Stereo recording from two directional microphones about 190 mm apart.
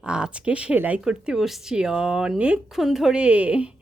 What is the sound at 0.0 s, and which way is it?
A woman's voice, 5° right (ahead or behind).